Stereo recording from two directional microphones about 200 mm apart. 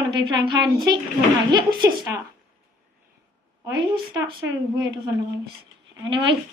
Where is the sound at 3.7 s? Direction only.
20° right (ahead or behind).